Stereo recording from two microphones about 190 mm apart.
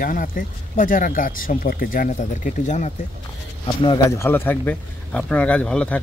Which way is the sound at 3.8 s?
20° left (ahead or behind).